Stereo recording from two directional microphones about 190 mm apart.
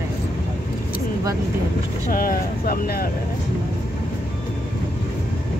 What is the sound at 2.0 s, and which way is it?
Speech, 50° left (ahead or behind).